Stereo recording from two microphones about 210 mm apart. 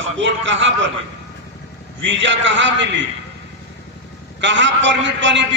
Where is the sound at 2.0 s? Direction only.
60° right (ahead or behind).